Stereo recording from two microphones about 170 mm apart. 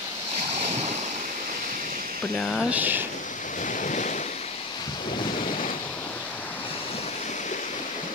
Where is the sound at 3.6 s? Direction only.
50° left (ahead or behind).